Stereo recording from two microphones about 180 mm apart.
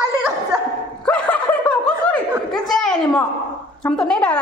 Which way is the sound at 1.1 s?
5° left (ahead or behind).